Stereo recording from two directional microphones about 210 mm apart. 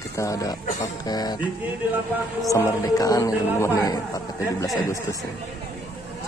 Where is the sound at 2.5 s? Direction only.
15° left (ahead or behind).